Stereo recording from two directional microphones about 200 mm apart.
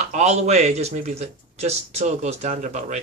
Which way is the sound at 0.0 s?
35° right (ahead or behind).